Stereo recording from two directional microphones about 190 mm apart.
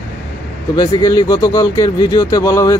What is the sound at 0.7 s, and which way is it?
Speech, 20° left (ahead or behind).